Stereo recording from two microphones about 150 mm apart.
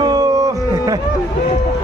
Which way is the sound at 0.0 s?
25° right (ahead or behind).